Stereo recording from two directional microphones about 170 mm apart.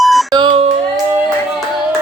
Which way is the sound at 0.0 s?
Centre (ahead or behind).